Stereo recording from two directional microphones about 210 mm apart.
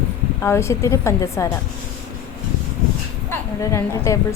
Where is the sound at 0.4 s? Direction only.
15° left (ahead or behind).